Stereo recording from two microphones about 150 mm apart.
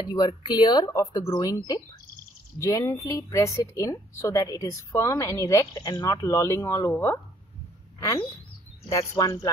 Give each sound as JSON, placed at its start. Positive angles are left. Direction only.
{"t": 0.0, "sound": "a woman's voice", "side_deg": 30}
{"t": 2.6, "sound": "a woman's voice", "side_deg": 20}